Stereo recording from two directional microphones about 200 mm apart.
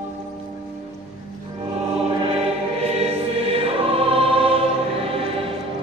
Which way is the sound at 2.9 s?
30° right (ahead or behind).